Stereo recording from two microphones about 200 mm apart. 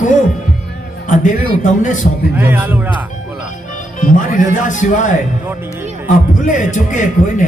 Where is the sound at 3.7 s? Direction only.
40° left (ahead or behind).